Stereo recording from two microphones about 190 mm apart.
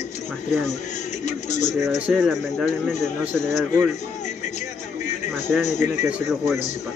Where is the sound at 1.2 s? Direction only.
40° left (ahead or behind).